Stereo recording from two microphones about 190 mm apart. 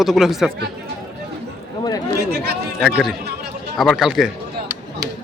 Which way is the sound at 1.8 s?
20° left (ahead or behind).